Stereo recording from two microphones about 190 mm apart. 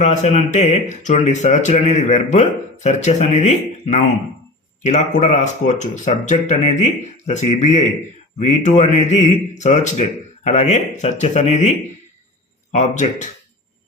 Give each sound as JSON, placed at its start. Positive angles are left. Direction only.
{"t": 0.0, "sound": "speech", "side_deg": 35}
{"t": 12.7, "sound": "speech", "side_deg": 35}